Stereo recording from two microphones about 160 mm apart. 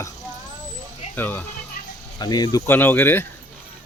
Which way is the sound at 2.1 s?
25° left (ahead or behind).